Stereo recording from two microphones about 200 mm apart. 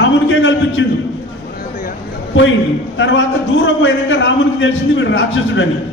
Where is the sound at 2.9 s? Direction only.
65° left (ahead or behind).